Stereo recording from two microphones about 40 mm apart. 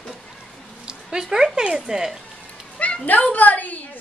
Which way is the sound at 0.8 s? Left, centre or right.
Centre.